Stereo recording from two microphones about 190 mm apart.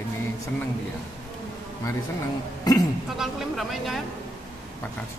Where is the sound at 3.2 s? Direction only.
Centre (ahead or behind).